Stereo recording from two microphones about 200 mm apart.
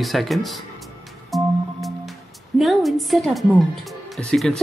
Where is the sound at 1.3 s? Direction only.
Centre (ahead or behind).